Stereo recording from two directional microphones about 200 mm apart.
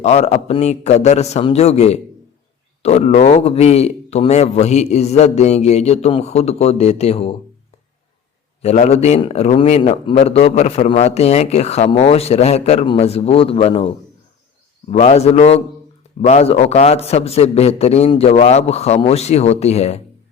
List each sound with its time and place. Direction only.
0.0 s a man's voice: 35° left (ahead or behind)
8.6 s a man's voice: 30° left (ahead or behind)